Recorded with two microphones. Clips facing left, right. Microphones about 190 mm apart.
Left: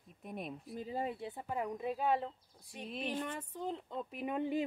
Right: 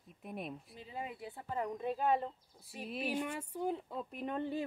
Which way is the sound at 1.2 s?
20° left (ahead or behind).